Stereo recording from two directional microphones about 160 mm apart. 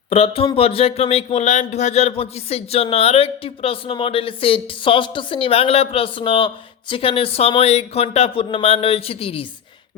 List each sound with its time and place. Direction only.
0.1 s speech: 35° left (ahead or behind)